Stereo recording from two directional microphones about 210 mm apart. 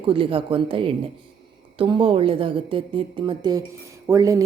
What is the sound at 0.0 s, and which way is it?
A woman's voice, 25° right (ahead or behind).